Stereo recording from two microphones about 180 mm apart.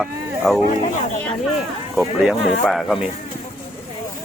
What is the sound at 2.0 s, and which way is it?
Speech, centre (ahead or behind).